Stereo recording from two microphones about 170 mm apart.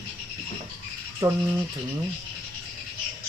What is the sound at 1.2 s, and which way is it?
Speech, 20° right (ahead or behind).